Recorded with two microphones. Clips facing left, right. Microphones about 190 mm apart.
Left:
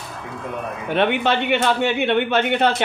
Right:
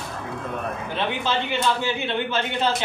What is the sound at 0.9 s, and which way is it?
Speech, 65° left (ahead or behind).